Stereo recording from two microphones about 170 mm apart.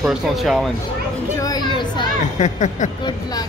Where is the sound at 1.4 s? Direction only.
25° left (ahead or behind).